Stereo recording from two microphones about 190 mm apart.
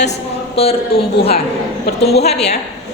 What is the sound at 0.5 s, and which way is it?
Speech, 30° left (ahead or behind).